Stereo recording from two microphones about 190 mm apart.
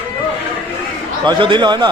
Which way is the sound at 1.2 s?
25° right (ahead or behind).